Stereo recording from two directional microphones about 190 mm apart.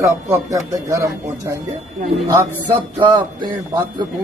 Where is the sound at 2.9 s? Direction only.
25° right (ahead or behind).